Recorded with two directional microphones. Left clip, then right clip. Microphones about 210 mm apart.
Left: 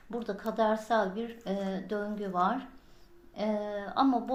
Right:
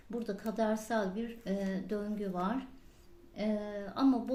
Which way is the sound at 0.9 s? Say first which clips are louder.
Left 6 dB; 55° right (ahead or behind).